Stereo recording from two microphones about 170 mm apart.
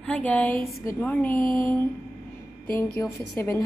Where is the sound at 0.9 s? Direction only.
10° left (ahead or behind).